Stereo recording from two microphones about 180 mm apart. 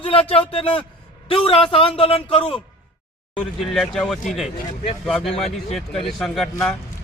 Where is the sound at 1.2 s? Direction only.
30° left (ahead or behind).